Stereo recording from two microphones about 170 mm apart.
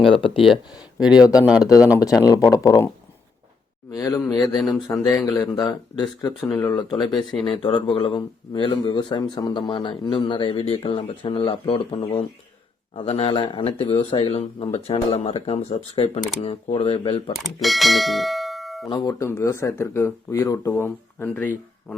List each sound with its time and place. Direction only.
0.0 s speech: 30° left (ahead or behind)
0.9 s speech: 5° right (ahead or behind)
1.6 s speech: 20° left (ahead or behind)
3.9 s speech: 20° left (ahead or behind)
6.5 s speech: 10° left (ahead or behind)
6.9 s speech: 25° left (ahead or behind)
7.2 s speech: centre (ahead or behind)
7.5 s speech: 30° left (ahead or behind)
17.3 s speech: centre (ahead or behind)
18.9 s speech: 20° left (ahead or behind)